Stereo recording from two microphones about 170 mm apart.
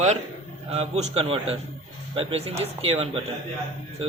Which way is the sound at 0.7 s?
35° right (ahead or behind).